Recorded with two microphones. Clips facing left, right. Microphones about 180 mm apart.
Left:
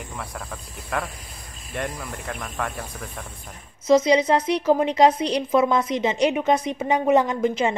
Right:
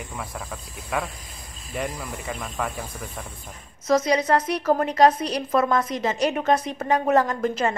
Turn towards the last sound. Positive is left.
turn(degrees=15)  # may be behind; listen again after turning